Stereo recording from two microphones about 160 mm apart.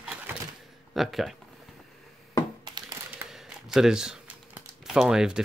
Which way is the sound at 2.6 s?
25° right (ahead or behind).